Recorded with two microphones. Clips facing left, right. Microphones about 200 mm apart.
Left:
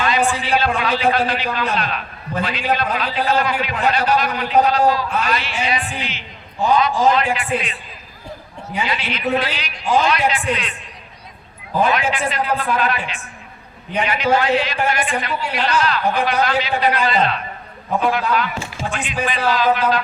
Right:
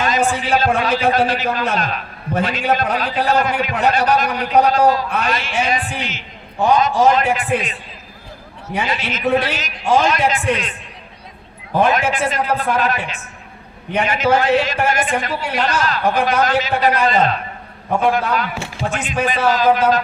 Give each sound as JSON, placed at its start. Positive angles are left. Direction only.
{"t": 0.0, "sound": "a man's voice", "side_deg": -45}
{"t": 8.9, "sound": "a man's voice", "side_deg": -45}
{"t": 11.9, "sound": "a man's voice", "side_deg": -45}